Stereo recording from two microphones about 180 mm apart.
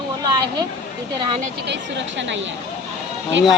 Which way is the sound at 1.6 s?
75° right (ahead or behind).